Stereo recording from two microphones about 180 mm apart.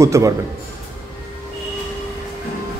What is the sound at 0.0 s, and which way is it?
Speech, 15° right (ahead or behind).